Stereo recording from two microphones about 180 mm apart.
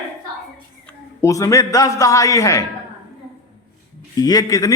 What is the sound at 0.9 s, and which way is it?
A man's voice, 15° left (ahead or behind).